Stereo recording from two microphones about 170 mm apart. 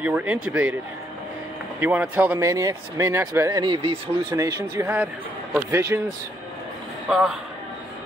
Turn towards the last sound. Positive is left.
turn(degrees=-5)  # may be behind; listen again after turning